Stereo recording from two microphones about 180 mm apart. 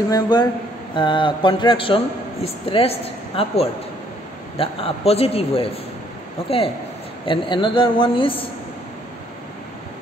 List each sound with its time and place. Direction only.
0.1 s a man's voice: 25° left (ahead or behind)
7.2 s a man's voice: 25° left (ahead or behind)